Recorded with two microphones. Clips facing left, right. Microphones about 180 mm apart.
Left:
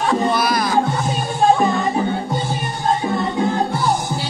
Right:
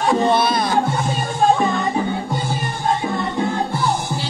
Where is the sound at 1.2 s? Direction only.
Centre (ahead or behind).